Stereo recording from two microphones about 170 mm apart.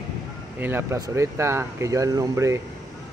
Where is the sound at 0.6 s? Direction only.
15° right (ahead or behind).